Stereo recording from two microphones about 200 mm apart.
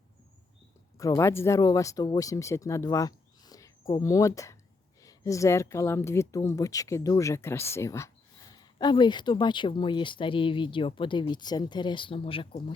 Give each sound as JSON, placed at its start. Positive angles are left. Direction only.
{"t": 0.9, "sound": "speech", "side_deg": 15}